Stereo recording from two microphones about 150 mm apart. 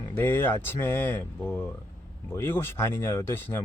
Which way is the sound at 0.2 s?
15° left (ahead or behind).